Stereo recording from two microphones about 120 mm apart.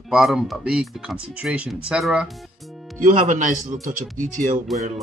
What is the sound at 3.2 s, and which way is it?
Speech, 90° right.